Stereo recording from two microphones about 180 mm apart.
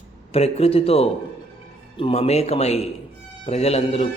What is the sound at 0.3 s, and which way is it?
A man's voice, 35° left (ahead or behind).